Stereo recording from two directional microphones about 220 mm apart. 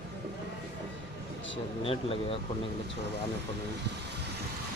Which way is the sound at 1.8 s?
25° left (ahead or behind).